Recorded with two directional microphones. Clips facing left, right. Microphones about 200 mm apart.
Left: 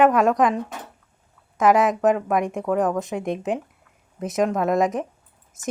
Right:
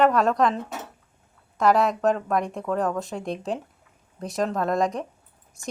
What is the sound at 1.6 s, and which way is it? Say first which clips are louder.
A woman's voice: left 3 dB; 20° left (ahead or behind).